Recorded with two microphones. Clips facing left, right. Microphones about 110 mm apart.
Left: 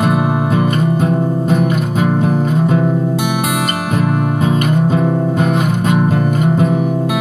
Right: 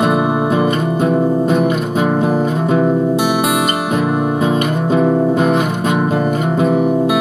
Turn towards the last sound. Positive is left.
turn(degrees=-25)  # may be behind; listen again after turning